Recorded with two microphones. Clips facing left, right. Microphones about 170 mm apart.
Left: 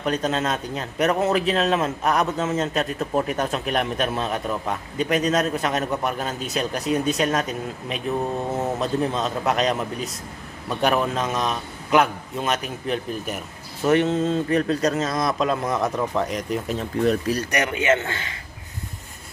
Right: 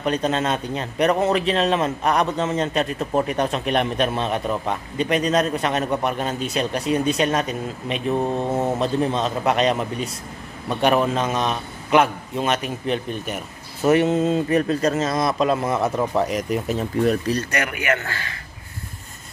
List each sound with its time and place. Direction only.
0.0 s speech: centre (ahead or behind)
17.4 s a man's voice: 15° left (ahead or behind)